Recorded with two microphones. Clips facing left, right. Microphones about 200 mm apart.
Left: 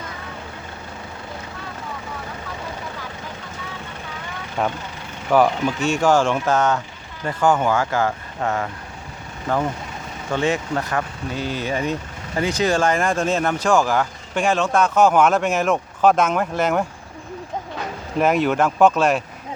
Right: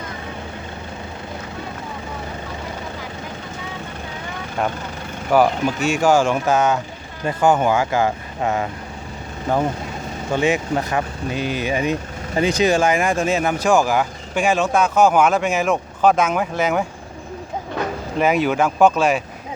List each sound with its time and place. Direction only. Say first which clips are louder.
4.6 s speech: even; centre (ahead or behind)
7.3 s speech: right 2 dB; 20° right (ahead or behind)
10.3 s speech: right 2 dB; 15° right (ahead or behind)
18.2 s speech: even; centre (ahead or behind)